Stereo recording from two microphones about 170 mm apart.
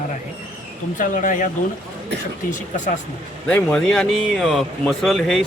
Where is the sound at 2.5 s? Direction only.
45° left (ahead or behind).